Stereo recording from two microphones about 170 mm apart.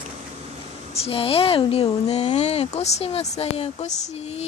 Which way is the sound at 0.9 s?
35° left (ahead or behind).